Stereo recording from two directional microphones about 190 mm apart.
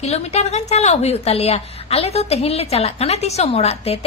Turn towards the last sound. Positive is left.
turn(degrees=30)  # may be behind; listen again after turning